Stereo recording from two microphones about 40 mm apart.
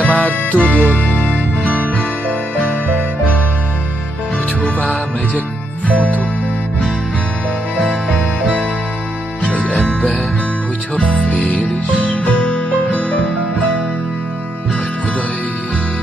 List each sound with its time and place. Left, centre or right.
0.0 s music: left
4.7 s music: left
9.4 s music: left
11.0 s music: left